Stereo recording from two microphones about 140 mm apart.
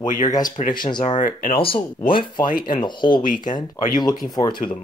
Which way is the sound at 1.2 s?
70° left (ahead or behind).